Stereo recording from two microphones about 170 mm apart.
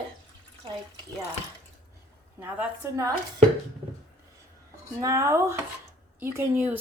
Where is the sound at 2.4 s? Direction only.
15° right (ahead or behind).